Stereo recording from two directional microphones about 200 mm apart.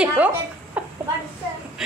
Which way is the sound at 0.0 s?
10° right (ahead or behind).